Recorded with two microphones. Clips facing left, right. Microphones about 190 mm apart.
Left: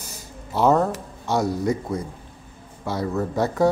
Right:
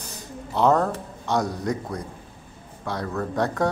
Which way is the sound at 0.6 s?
5° left (ahead or behind).